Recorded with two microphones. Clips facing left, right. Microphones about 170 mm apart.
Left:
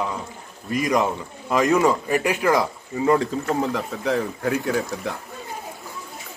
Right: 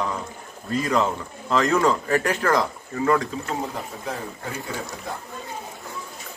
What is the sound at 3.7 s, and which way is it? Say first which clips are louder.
Speech: left 8 dB; 85° left.